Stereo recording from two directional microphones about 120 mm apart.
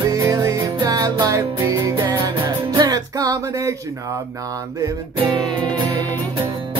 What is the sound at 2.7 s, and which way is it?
Speech, 30° right (ahead or behind).